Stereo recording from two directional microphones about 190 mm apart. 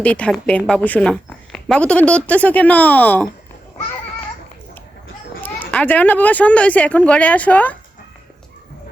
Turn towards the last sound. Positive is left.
turn(degrees=10)  # may be behind; listen again after turning